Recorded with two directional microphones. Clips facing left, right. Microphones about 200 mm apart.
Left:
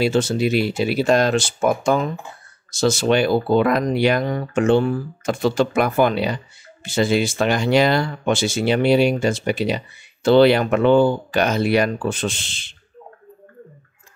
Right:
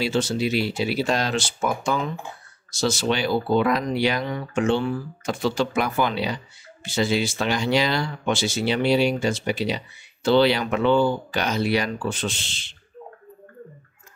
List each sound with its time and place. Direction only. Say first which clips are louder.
0.0 s speech: left 5 dB; 50° left (ahead or behind)